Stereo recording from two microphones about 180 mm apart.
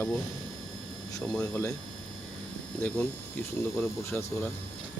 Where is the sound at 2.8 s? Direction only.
10° left (ahead or behind).